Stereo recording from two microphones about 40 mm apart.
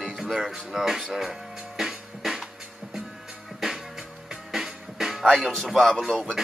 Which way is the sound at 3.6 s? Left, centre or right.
Centre.